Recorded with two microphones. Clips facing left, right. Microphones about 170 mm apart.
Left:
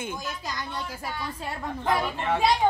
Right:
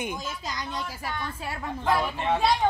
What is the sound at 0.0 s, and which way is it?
Speech, 15° right (ahead or behind).